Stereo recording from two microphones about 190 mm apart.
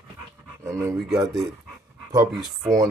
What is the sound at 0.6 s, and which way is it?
Speech, 15° right (ahead or behind).